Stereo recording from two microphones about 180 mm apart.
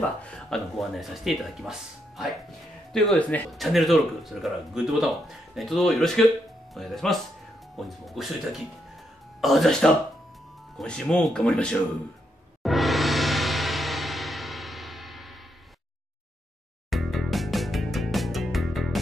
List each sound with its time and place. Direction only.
0.2 s speech: 5° left (ahead or behind)
12.6 s music: centre (ahead or behind)
16.9 s music: centre (ahead or behind)